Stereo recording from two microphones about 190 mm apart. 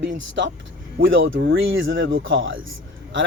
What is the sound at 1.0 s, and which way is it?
A man's voice, 90° right.